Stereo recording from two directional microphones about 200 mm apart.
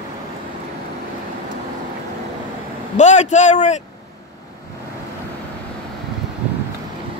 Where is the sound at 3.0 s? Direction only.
35° left (ahead or behind).